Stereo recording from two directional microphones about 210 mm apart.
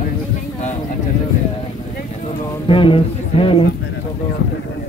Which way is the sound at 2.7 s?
25° left (ahead or behind).